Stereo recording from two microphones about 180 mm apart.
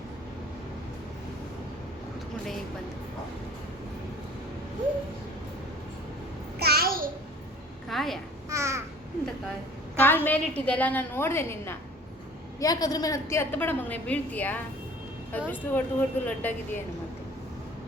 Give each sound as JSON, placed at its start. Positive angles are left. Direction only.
{"t": 6.6, "sound": "a sound", "side_deg": -60}
{"t": 7.9, "sound": "vehicle", "side_deg": 0}
{"t": 8.4, "sound": "crow", "side_deg": -15}
{"t": 10.0, "sound": "a woman's voice", "side_deg": 10}